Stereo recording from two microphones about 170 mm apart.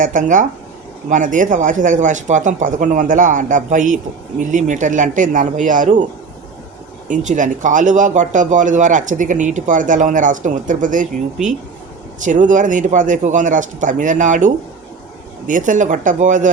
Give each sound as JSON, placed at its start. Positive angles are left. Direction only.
{"t": 0.0, "sound": "speech", "side_deg": -50}
{"t": 7.1, "sound": "speech", "side_deg": -50}
{"t": 12.2, "sound": "speech", "side_deg": -50}